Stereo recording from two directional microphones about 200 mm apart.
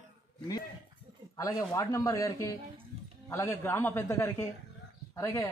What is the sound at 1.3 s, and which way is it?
A man's voice, 20° left (ahead or behind).